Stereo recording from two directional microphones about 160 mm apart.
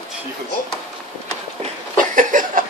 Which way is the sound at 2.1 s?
55° right (ahead or behind).